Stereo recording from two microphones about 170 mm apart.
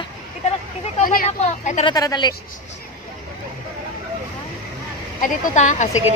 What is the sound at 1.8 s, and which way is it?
Speech, 20° left (ahead or behind).